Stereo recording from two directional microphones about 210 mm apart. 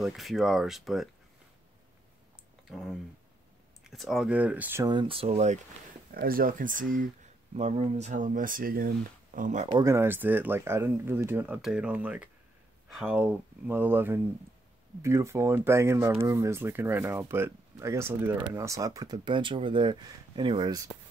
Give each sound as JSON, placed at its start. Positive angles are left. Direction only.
{"t": 0.0, "sound": "speech", "side_deg": 0}
{"t": 2.7, "sound": "speech", "side_deg": 0}
{"t": 6.1, "sound": "speech", "side_deg": -45}
{"t": 9.7, "sound": "speech", "side_deg": -15}